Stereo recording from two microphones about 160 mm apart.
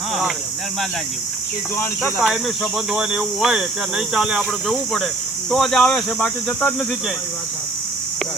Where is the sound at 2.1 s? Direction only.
5° right (ahead or behind).